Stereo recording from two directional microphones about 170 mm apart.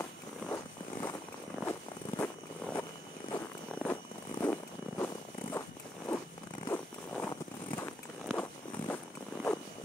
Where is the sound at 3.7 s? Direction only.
10° left (ahead or behind).